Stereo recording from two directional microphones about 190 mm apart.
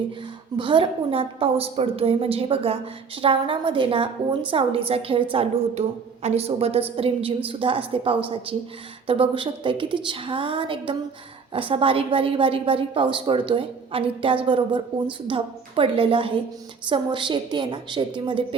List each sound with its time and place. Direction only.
0.5 s a woman's voice: 25° right (ahead or behind)